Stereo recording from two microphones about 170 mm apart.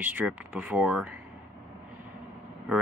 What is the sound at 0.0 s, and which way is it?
Speech, 10° right (ahead or behind).